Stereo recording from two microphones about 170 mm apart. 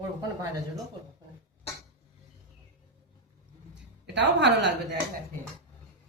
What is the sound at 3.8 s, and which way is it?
A woman's voice, 90° right.